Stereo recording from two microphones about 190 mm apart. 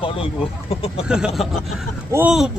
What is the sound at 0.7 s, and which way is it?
Speech, 30° left (ahead or behind).